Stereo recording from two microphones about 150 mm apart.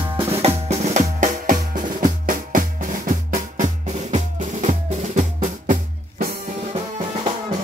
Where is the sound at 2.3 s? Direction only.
65° right (ahead or behind).